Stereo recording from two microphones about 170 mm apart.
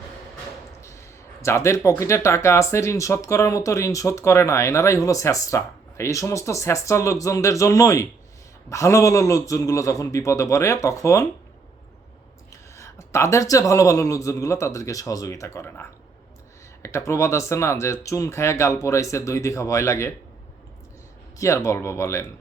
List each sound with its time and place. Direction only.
0.8 s speech: 15° left (ahead or behind)
12.7 s speech: 15° left (ahead or behind)
16.8 s speech: 15° left (ahead or behind)
21.3 s speech: 20° left (ahead or behind)